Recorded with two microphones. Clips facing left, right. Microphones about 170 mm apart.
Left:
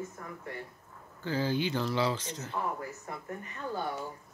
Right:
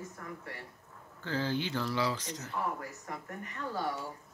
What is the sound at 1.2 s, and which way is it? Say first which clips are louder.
Speech: left 3 dB; 10° left (ahead or behind).